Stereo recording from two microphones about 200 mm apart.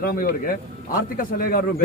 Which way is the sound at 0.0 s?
50° left (ahead or behind).